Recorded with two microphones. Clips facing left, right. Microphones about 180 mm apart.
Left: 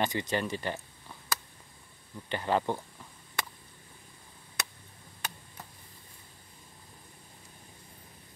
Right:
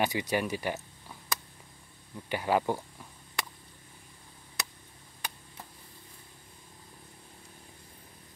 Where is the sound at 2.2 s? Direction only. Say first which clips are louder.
Right 1 dB; 10° right (ahead or behind).